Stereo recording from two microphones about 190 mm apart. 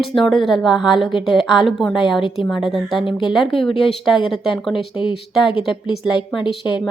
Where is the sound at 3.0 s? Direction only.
25° left (ahead or behind).